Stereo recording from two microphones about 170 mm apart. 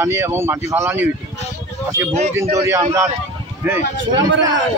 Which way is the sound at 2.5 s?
15° right (ahead or behind).